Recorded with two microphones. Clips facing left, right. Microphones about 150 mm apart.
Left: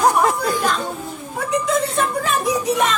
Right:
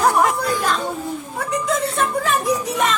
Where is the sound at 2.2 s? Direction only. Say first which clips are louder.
Left 1 dB; centre (ahead or behind).